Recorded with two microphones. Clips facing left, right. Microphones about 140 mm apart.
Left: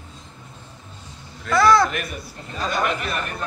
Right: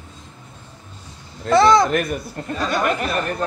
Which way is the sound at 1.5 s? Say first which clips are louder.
Right 3 dB; 25° right (ahead or behind).